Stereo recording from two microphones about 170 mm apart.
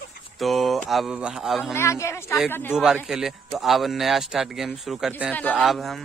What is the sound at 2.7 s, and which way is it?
A man's voice, 5° right (ahead or behind).